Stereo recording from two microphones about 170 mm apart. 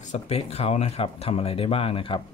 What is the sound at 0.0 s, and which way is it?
Speech, 40° left (ahead or behind).